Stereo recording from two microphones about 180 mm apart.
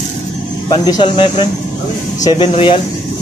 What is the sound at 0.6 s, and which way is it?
Speech, 20° left (ahead or behind).